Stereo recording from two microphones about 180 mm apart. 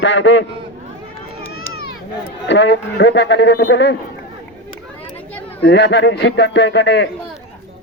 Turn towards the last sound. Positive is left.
turn(degrees=75)  # may be behind; listen again after turning